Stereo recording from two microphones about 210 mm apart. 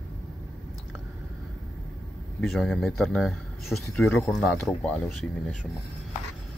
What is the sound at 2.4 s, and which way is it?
Speech, centre (ahead or behind).